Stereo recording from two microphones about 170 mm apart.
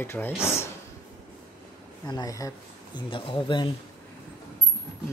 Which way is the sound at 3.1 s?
30° left (ahead or behind).